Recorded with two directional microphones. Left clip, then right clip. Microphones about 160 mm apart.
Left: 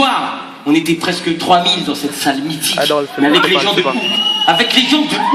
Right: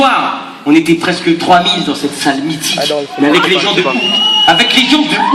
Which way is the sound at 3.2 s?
20° left (ahead or behind).